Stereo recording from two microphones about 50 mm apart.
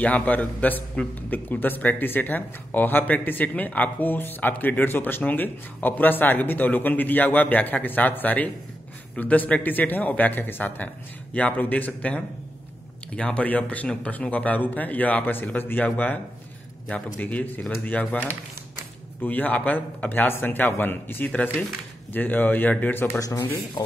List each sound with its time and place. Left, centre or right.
0.0 s a man's voice: left
21.3 s speech: left